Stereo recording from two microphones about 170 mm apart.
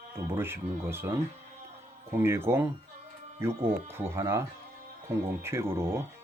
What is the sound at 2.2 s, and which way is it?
Speech, 15° right (ahead or behind).